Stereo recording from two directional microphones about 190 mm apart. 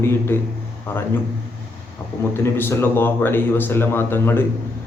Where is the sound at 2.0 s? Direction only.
15° left (ahead or behind).